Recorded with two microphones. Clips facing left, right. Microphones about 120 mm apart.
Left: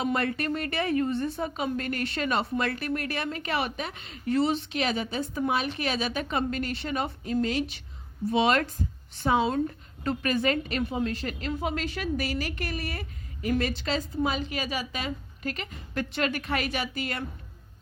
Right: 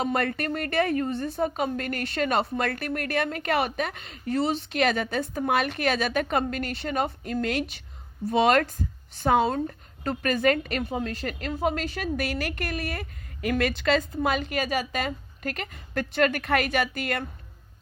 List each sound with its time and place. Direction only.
0.0 s a woman's voice: 45° right (ahead or behind)
4.8 s a woman's voice: 55° right (ahead or behind)
7.4 s speech: 60° right (ahead or behind)
8.3 s a woman's voice: 45° right (ahead or behind)
13.4 s a woman's voice: 70° right (ahead or behind)